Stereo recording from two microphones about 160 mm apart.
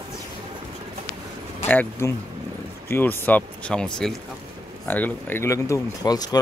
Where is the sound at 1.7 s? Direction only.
10° left (ahead or behind).